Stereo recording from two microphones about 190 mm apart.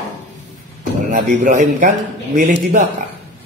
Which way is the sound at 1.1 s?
40° right (ahead or behind).